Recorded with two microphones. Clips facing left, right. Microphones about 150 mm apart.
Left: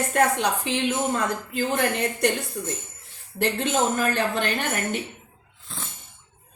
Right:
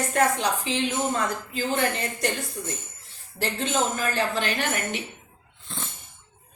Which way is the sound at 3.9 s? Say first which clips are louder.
Left 2 dB; 60° left (ahead or behind).